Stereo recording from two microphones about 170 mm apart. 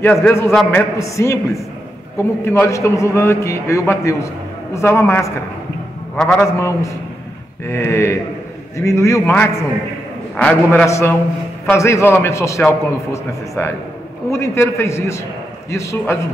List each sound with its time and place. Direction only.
0.0 s a man's voice: centre (ahead or behind)
0.3 s a man's voice: 15° left (ahead or behind)
6.1 s a man's voice: 5° left (ahead or behind)
6.4 s a man's voice: 15° left (ahead or behind)